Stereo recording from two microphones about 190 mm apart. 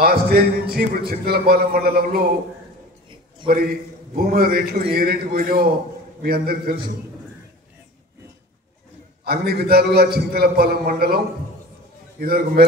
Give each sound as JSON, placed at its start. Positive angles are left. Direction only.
{"t": 0.0, "sound": "speech", "side_deg": -50}
{"t": 3.4, "sound": "a man's voice", "side_deg": -25}
{"t": 4.1, "sound": "speech", "side_deg": -50}
{"t": 9.2, "sound": "a man's voice", "side_deg": -55}
{"t": 12.2, "sound": "speech", "side_deg": -55}